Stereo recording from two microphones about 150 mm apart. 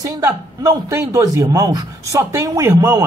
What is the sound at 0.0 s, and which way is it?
Speech, 20° right (ahead or behind).